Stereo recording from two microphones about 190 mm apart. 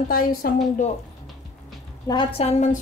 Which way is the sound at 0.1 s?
50° left (ahead or behind).